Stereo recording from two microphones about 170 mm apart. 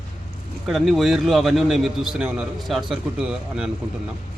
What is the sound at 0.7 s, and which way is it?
A man's voice, centre (ahead or behind).